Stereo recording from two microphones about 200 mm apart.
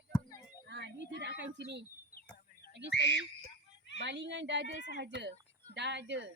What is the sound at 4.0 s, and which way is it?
A woman's voice, 65° right (ahead or behind).